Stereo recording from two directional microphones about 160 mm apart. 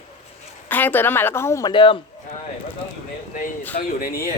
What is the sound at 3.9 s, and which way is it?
Speech, 65° left (ahead or behind).